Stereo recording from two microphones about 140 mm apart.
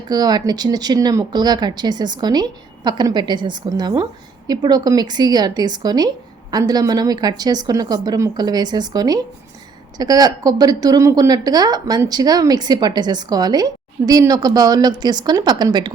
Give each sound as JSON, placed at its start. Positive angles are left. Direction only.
{"t": 0.1, "sound": "speech", "side_deg": -30}